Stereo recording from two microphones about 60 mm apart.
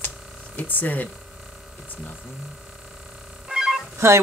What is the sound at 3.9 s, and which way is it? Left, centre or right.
Telephone dialing, right.